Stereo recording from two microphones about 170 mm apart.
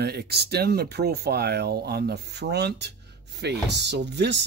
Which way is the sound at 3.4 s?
85° right.